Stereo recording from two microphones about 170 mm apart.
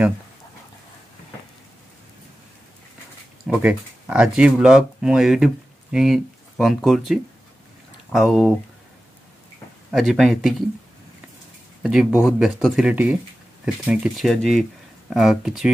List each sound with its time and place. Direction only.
3.4 s speech: 5° right (ahead or behind)
9.8 s speech: centre (ahead or behind)
11.8 s speech: 5° right (ahead or behind)